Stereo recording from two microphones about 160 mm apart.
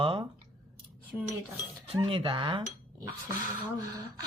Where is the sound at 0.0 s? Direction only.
35° right (ahead or behind).